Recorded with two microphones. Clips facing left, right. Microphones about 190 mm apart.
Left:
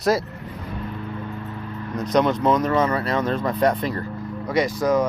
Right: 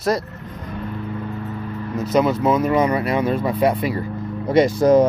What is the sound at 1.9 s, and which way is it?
Speech, 5° right (ahead or behind).